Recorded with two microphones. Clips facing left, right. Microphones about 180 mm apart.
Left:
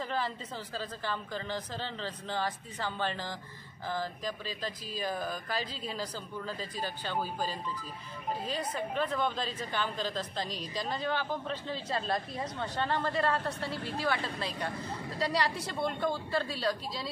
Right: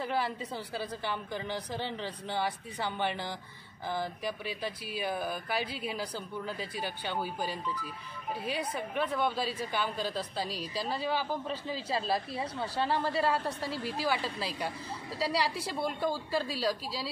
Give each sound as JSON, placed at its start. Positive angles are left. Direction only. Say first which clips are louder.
{"t": 0.0, "sound": "a woman's voice", "louder": "right 2 dB", "side_deg": -10}